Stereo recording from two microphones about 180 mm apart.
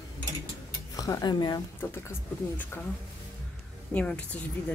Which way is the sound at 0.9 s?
20° left (ahead or behind).